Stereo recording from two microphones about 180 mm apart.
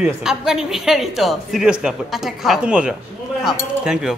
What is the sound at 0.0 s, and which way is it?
A man's voice, 5° right (ahead or behind).